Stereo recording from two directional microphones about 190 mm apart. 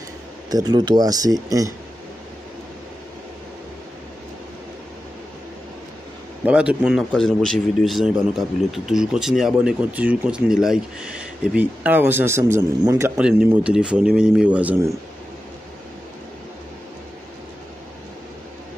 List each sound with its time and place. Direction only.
0.5 s speech: 20° right (ahead or behind)
6.4 s a man's voice: 5° right (ahead or behind)